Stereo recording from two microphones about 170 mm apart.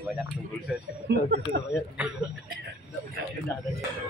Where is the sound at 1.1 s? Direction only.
70° right (ahead or behind).